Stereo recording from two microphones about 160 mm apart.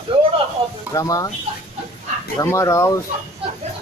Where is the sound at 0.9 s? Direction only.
20° left (ahead or behind).